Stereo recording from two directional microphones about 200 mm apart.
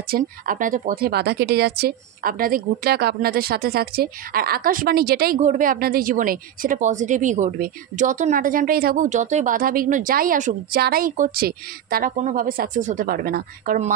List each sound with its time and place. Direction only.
0.1 s speech: 40° right (ahead or behind)
5.4 s speech: 40° right (ahead or behind)